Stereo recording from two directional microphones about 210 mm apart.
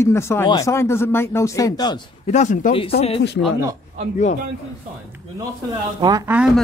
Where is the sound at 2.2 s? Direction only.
35° left (ahead or behind).